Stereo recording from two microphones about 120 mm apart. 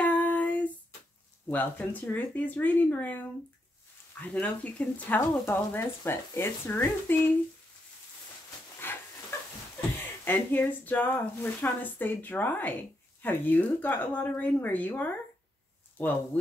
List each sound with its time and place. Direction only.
0.0 s female singing: 15° left (ahead or behind)
1.5 s speech: 15° left (ahead or behind)
8.8 s a sound: 15° left (ahead or behind)
9.8 s speech: 15° left (ahead or behind)